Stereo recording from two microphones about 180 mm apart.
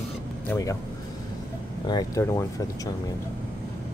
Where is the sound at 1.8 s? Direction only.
20° left (ahead or behind).